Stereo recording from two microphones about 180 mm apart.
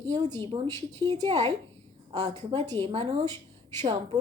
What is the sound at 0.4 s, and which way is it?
A woman's voice, 30° right (ahead or behind).